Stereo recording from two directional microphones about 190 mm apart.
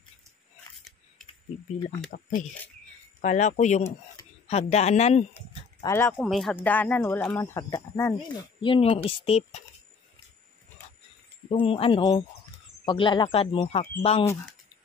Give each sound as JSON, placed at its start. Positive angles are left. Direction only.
{"t": 3.2, "sound": "speech", "side_deg": 40}
{"t": 5.9, "sound": "speech", "side_deg": 10}
{"t": 6.1, "sound": "speech", "side_deg": 0}
{"t": 11.5, "sound": "speech", "side_deg": 30}
{"t": 14.2, "sound": "speech", "side_deg": 15}